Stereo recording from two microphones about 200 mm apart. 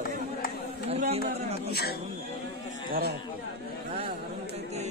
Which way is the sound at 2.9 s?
50° right (ahead or behind).